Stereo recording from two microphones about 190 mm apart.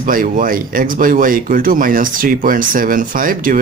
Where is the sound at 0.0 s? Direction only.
45° right (ahead or behind).